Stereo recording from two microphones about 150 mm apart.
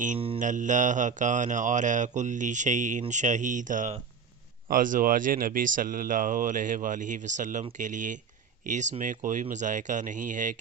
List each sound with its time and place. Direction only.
0.3 s speech: 55° right (ahead or behind)